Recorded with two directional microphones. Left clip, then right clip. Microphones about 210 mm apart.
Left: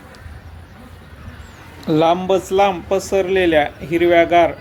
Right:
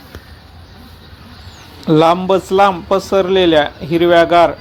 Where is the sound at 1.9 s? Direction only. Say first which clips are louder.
Right 4 dB; 15° right (ahead or behind).